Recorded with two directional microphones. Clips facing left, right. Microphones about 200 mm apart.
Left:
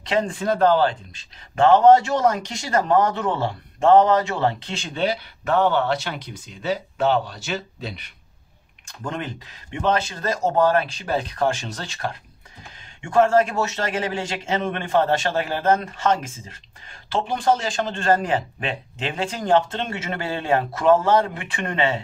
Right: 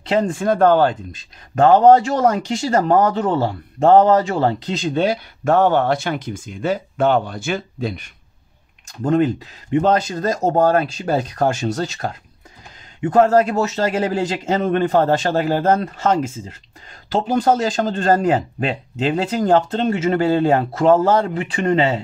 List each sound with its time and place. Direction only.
0.1 s speech: 45° right (ahead or behind)
17.2 s speech: 40° right (ahead or behind)